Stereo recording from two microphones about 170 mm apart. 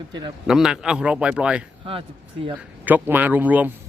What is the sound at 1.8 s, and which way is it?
Speech, 30° right (ahead or behind).